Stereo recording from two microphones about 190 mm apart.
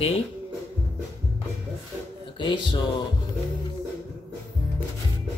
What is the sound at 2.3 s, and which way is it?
Speech, 25° left (ahead or behind).